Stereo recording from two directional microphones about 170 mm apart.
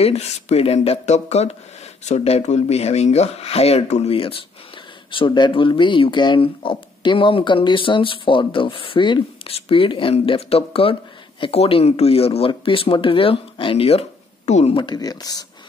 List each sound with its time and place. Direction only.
0.0 s speech: 40° left (ahead or behind); by 15.4 s 20° left (ahead or behind)